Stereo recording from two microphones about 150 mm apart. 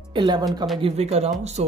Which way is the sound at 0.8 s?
45° right (ahead or behind).